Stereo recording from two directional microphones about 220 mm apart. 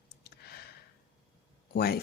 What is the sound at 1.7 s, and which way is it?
Speech, 45° left (ahead or behind).